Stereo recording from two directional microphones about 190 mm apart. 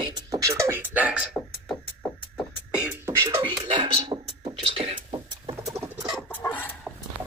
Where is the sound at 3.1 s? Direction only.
15° right (ahead or behind).